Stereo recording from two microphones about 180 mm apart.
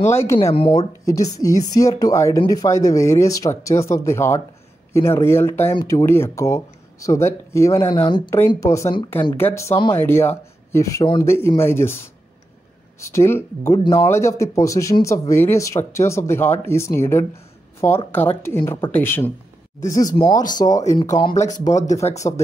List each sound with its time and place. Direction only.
0.1 s speech: 15° left (ahead or behind)